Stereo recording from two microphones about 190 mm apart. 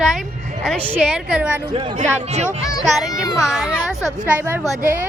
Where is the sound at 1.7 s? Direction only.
25° right (ahead or behind).